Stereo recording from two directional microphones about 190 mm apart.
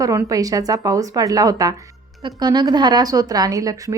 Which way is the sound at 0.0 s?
15° right (ahead or behind).